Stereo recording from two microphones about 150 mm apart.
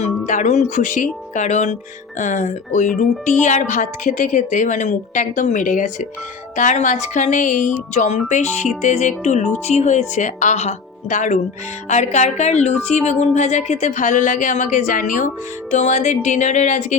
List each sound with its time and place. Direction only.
0.3 s speech: 50° left (ahead or behind)